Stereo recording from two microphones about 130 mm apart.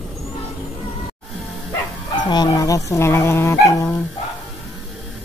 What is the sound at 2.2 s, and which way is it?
Speech, 35° left (ahead or behind).